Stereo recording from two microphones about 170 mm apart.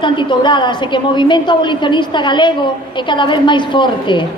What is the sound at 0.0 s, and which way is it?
A woman's voice, 30° left (ahead or behind).